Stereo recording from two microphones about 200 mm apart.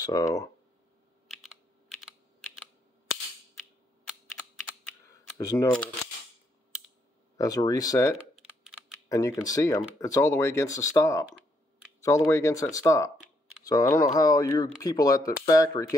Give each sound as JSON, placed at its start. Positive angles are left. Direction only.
{"t": 0.0, "sound": "speech", "side_deg": 15}
{"t": 1.3, "sound": "computer keyboard", "side_deg": 0}
{"t": 5.4, "sound": "speech", "side_deg": 15}
{"t": 7.3, "sound": "speech", "side_deg": 15}
{"t": 8.6, "sound": "typing", "side_deg": -5}
{"t": 9.1, "sound": "speech", "side_deg": 15}
{"t": 12.3, "sound": "speech", "side_deg": 15}